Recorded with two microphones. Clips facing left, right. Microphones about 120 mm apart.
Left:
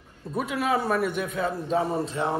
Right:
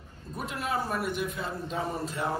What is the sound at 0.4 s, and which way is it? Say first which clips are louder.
A man's voice: left 6 dB; 65° left (ahead or behind).